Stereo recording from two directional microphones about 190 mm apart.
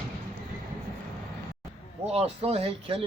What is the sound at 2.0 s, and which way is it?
Speech, 30° right (ahead or behind).